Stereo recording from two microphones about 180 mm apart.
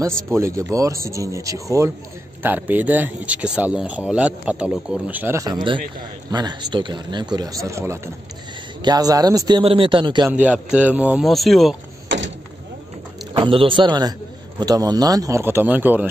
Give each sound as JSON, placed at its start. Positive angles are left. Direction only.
{"t": 0.3, "sound": "speech", "side_deg": -15}
{"t": 10.4, "sound": "speech", "side_deg": -5}
{"t": 13.3, "sound": "speech", "side_deg": -25}